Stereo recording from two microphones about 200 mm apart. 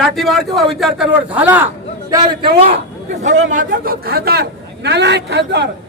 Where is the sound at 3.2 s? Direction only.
40° right (ahead or behind).